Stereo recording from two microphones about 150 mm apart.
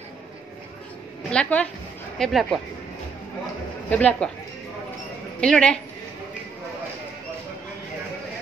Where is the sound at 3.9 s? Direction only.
10° left (ahead or behind).